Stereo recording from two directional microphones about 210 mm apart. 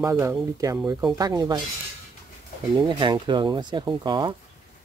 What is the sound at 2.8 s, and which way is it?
Speech, 20° right (ahead or behind).